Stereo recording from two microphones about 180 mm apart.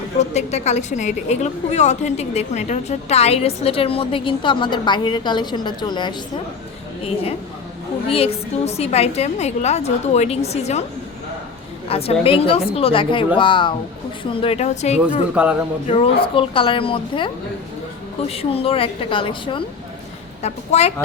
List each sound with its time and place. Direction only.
0.2 s a woman's voice: 40° left (ahead or behind)
11.9 s a woman's voice: 35° left (ahead or behind)
15.4 s speech: 5° right (ahead or behind)
15.9 s a woman's voice: 30° left (ahead or behind)